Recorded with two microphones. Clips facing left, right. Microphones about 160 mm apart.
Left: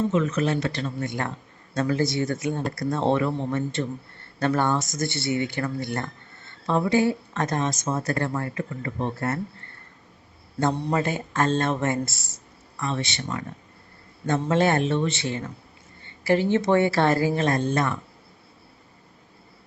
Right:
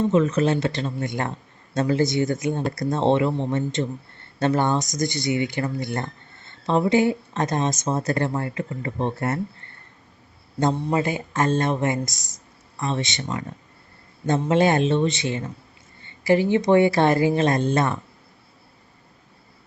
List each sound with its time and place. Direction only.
0.1 s speech: 35° right (ahead or behind)
10.6 s speech: 15° right (ahead or behind)